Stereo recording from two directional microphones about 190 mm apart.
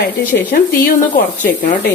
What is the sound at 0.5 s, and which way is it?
Speech, 50° left (ahead or behind).